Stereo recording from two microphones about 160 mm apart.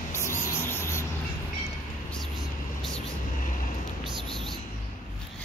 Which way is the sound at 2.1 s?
Centre (ahead or behind).